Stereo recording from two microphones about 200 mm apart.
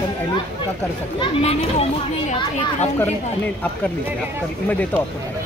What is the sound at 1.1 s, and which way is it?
Speech, 30° left (ahead or behind).